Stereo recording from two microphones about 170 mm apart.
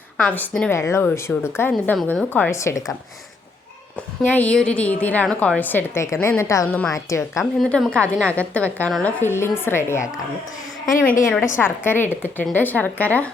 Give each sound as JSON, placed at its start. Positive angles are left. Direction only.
{"t": 0.2, "sound": "a woman's voice", "side_deg": 5}
{"t": 4.2, "sound": "a woman's voice", "side_deg": 10}
{"t": 7.6, "sound": "a woman's voice", "side_deg": 5}
{"t": 11.5, "sound": "a woman's voice", "side_deg": 15}